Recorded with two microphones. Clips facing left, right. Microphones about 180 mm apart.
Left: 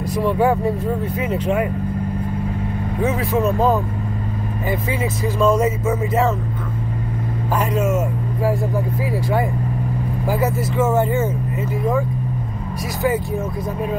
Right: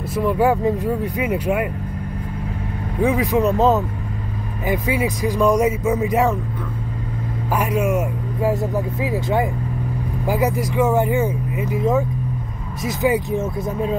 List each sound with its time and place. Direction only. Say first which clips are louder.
0.1 s speech: even; 5° right (ahead or behind)
3.0 s speech: right 2 dB; 15° right (ahead or behind)
7.5 s speech: even; 10° right (ahead or behind)
13.0 s speech: right 1 dB; 15° right (ahead or behind)